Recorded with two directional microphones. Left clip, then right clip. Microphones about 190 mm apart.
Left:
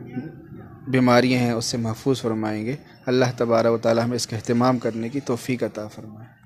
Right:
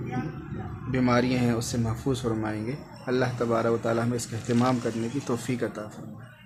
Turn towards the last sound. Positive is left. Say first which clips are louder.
# left 4 dB
turn(degrees=35)  # may be behind; listen again after turning